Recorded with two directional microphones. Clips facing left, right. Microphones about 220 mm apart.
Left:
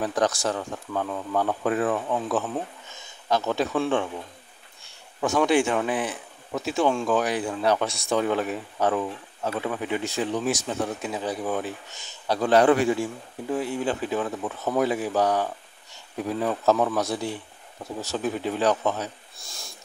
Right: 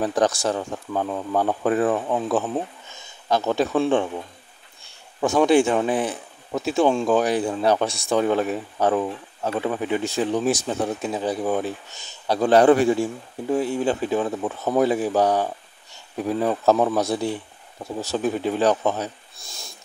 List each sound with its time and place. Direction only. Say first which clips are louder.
0.0 s speech: right 3 dB; 30° right (ahead or behind)
5.2 s speech: right 4 dB; 30° right (ahead or behind)